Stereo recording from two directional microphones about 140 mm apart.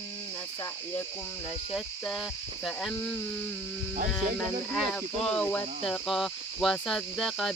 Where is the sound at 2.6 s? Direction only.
Centre (ahead or behind).